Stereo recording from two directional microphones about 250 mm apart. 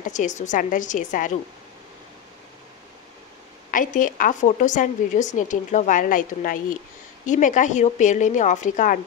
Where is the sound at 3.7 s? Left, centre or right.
Left.